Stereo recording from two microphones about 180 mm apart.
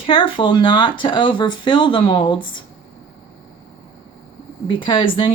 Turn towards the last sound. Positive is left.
turn(degrees=30)  # may be behind; listen again after turning